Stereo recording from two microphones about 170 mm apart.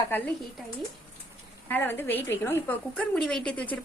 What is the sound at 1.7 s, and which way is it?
A woman's voice, 10° left (ahead or behind).